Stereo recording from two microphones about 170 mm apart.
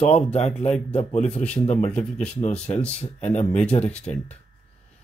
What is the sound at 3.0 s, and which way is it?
Speech, 40° left (ahead or behind).